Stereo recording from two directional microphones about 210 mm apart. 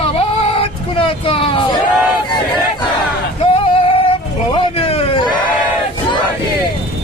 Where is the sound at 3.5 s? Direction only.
25° left (ahead or behind).